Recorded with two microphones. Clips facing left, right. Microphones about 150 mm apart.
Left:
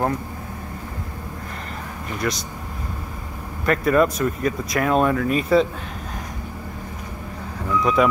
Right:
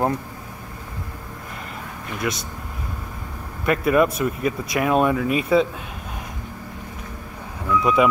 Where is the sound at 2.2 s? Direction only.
10° right (ahead or behind).